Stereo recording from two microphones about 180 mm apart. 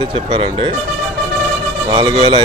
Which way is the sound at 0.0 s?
30° right (ahead or behind).